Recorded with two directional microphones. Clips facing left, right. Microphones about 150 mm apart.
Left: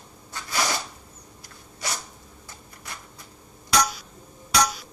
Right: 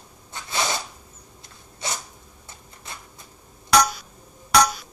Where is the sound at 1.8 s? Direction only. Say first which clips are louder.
Right 1 dB; 25° right (ahead or behind).